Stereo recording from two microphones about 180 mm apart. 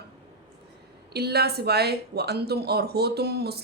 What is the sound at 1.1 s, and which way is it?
Speech, 65° right (ahead or behind).